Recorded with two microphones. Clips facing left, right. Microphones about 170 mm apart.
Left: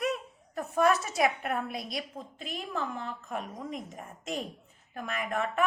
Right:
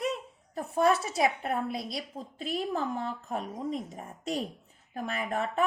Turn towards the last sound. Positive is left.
turn(degrees=-35)  # may be behind; listen again after turning